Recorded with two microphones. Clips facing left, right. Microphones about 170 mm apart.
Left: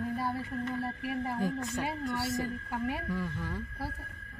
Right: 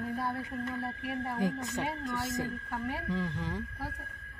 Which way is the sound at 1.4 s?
20° right (ahead or behind).